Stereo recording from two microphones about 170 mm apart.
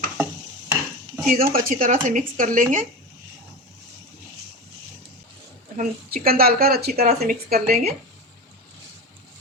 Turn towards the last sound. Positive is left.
turn(degrees=-55)  # may be behind; listen again after turning